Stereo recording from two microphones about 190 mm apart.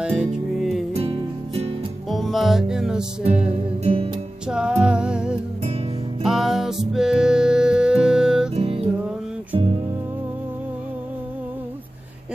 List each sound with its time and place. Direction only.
0.0 s music: 5° right (ahead or behind)
0.9 s music: 30° right (ahead or behind)
2.0 s music: centre (ahead or behind)
3.8 s music: 30° right (ahead or behind)
4.5 s music: 5° right (ahead or behind)
8.5 s music: 30° right (ahead or behind)